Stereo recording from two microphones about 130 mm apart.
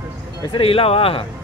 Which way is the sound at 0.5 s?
45° left (ahead or behind).